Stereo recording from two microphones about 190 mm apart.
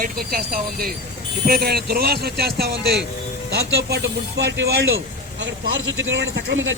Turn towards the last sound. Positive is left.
turn(degrees=-80)